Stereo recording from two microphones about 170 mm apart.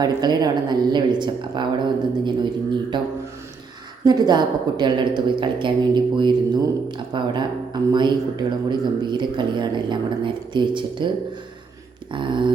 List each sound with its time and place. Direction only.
0.0 s speech: 25° right (ahead or behind)
12.1 s speech: 30° right (ahead or behind)